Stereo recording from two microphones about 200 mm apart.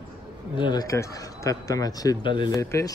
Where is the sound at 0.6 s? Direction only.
20° left (ahead or behind).